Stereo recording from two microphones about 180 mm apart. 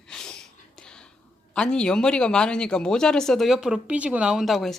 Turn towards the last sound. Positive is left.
turn(degrees=0)  # may be behind; listen again after turning